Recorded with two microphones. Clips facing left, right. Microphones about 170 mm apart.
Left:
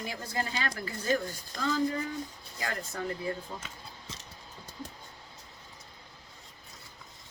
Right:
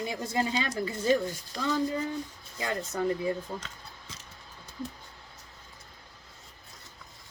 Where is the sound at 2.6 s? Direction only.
20° right (ahead or behind).